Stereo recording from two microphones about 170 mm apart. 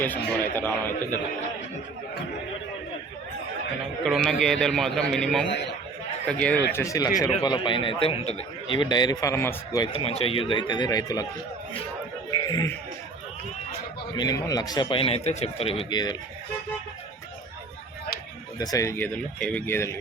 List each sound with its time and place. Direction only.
0.0 s speech: 10° left (ahead or behind)
4.0 s a man's voice: centre (ahead or behind)
5.5 s a man's voice: 90° left
6.2 s speech: 5° left (ahead or behind)
6.7 s a man's voice: 20° left (ahead or behind)
9.8 s a man's voice: 35° left (ahead or behind)
14.2 s speech: 20° left (ahead or behind)
15.9 s a man's voice: 25° left (ahead or behind)
18.6 s speech: 20° left (ahead or behind)